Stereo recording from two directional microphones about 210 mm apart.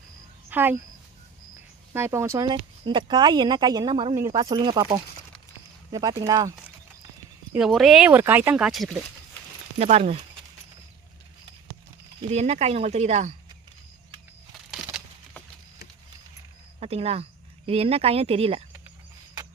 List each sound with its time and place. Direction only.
0.5 s speech: 10° right (ahead or behind)
1.9 s speech: 10° right (ahead or behind)
5.5 s a sound: 20° right (ahead or behind)
7.5 s speech: centre (ahead or behind)
9.7 s speech: 30° right (ahead or behind)
12.3 s speech: 30° right (ahead or behind)
16.8 s speech: 30° right (ahead or behind)